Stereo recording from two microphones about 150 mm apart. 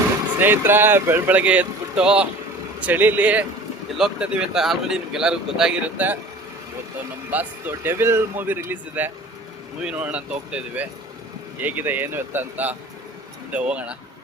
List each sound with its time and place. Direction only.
0.3 s speech: 15° right (ahead or behind)
7.3 s speech: 10° right (ahead or behind)